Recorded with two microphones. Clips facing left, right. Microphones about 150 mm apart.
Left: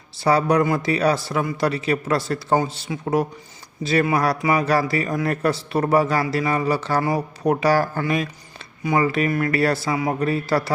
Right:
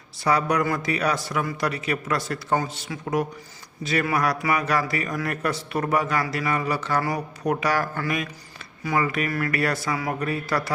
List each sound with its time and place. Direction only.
0.2 s a man's voice: 30° left (ahead or behind)